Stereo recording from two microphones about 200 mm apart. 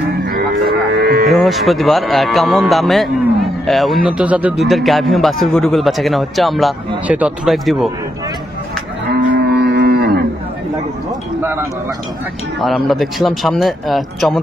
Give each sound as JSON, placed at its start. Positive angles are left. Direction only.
{"t": 0.9, "sound": "cattle", "side_deg": -55}
{"t": 1.3, "sound": "speech", "side_deg": 0}
{"t": 9.1, "sound": "livestock", "side_deg": -55}
{"t": 12.5, "sound": "speech", "side_deg": 0}